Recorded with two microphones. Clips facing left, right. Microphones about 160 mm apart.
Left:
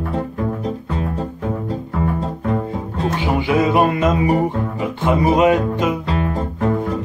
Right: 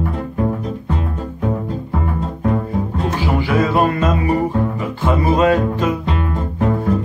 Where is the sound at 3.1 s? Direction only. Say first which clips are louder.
Even; 20° left (ahead or behind).